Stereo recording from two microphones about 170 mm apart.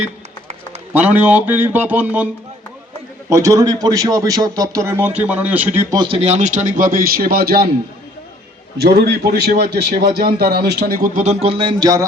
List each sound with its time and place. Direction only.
0.9 s speech: 10° right (ahead or behind)
3.2 s a man's voice: 20° right (ahead or behind)
5.9 s a man's voice: 30° right (ahead or behind); by 7.7 s 65° right (ahead or behind)
8.8 s a man's voice: 70° right (ahead or behind); by 12.0 s 25° right (ahead or behind)